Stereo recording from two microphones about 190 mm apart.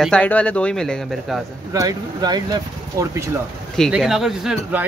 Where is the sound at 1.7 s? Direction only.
20° right (ahead or behind).